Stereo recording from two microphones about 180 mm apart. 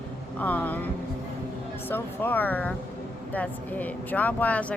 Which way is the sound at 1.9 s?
10° left (ahead or behind).